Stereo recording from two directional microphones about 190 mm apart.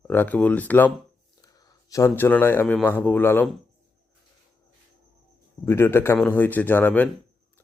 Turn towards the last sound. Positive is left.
turn(degrees=10)  # may be behind; listen again after turning